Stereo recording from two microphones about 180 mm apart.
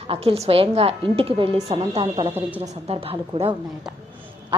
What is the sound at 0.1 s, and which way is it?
A woman's voice, 35° right (ahead or behind).